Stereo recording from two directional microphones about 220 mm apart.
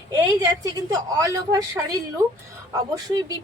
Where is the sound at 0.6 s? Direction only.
15° right (ahead or behind).